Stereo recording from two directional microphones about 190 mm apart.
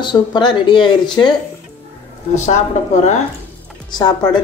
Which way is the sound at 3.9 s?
20° left (ahead or behind).